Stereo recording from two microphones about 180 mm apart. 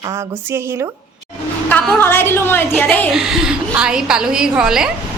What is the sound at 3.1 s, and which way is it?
A woman's voice, 5° right (ahead or behind).